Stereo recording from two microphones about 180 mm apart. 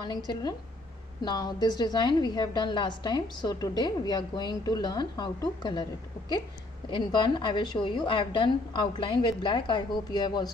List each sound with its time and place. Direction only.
0.0 s a woman's voice: 25° left (ahead or behind)